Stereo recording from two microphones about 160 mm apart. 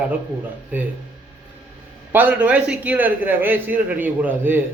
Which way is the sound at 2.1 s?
10° right (ahead or behind).